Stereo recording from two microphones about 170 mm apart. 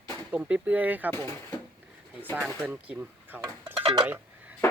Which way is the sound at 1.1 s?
15° left (ahead or behind).